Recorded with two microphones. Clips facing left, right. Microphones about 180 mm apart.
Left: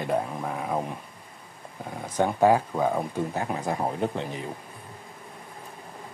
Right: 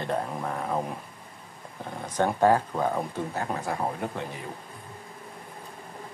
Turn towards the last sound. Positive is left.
turn(degrees=20)  # may be behind; listen again after turning